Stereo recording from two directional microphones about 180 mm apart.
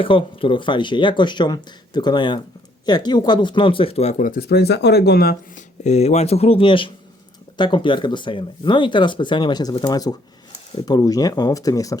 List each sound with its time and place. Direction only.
0.0 s speech: 30° left (ahead or behind); by 5.6 s 55° left (ahead or behind)
5.8 s speech: 40° left (ahead or behind); by 11.9 s 20° left (ahead or behind)